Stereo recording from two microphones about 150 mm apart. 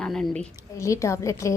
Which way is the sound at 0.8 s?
20° left (ahead or behind).